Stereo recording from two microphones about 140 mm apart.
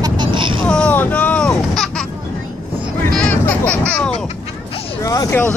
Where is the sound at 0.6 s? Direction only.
10° left (ahead or behind).